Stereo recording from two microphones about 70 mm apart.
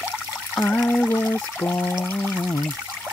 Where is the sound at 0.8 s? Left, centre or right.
Centre.